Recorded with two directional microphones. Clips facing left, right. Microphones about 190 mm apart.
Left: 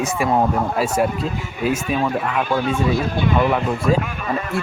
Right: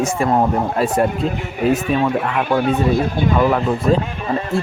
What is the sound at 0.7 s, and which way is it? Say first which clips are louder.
Speech: right 3 dB; 5° left (ahead or behind).